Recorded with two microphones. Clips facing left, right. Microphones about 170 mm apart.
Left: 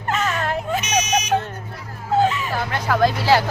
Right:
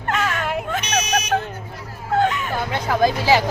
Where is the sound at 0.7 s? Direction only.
10° left (ahead or behind).